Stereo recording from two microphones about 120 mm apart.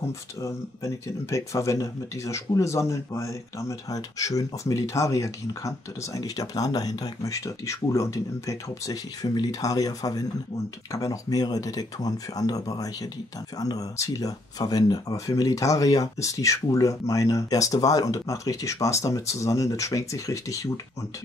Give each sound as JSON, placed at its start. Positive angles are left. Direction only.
{"t": 0.4, "sound": "speech", "side_deg": 25}